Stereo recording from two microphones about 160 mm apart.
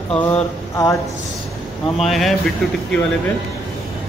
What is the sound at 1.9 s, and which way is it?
Speech, centre (ahead or behind).